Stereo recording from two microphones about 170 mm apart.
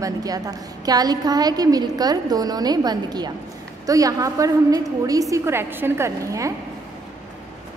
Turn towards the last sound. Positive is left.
turn(degrees=-15)  # may be behind; listen again after turning